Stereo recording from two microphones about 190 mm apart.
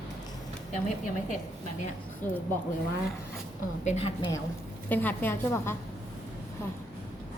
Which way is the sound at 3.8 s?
30° left (ahead or behind).